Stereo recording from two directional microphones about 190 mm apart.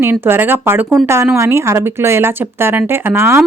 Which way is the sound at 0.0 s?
10° right (ahead or behind).